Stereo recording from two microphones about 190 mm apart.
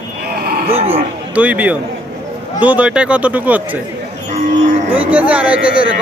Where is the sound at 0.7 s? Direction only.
30° right (ahead or behind).